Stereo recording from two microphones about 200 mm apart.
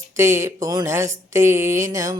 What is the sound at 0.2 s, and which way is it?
Speech, 15° right (ahead or behind).